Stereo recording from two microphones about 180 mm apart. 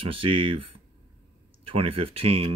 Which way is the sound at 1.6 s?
30° right (ahead or behind).